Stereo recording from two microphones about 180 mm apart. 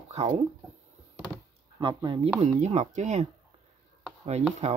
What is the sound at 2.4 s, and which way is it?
Chopping, 40° right (ahead or behind).